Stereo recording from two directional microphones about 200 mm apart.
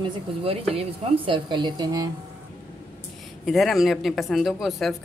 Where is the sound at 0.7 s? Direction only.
30° right (ahead or behind).